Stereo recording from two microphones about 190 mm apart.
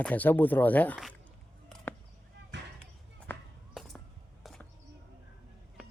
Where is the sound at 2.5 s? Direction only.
65° right (ahead or behind).